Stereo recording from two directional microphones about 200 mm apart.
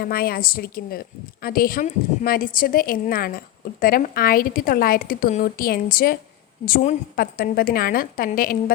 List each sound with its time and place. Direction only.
0.0 s a woman's voice: 50° left (ahead or behind)